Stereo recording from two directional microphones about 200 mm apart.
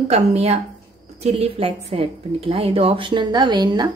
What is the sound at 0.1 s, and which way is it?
A woman's voice, 30° right (ahead or behind).